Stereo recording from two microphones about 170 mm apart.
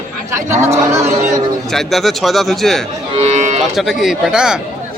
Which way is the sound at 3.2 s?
45° right (ahead or behind).